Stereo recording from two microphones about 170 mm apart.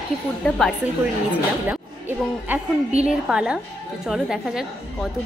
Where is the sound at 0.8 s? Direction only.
10° right (ahead or behind).